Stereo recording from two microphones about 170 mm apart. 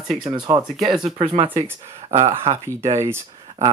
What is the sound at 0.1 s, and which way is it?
Speech, 25° right (ahead or behind).